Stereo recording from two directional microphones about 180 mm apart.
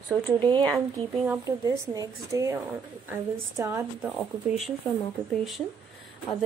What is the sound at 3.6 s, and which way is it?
Speech, 15° right (ahead or behind).